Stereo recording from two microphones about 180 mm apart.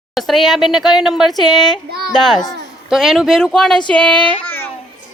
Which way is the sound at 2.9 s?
Centre (ahead or behind).